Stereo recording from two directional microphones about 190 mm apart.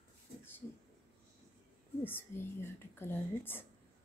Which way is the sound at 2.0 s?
10° left (ahead or behind).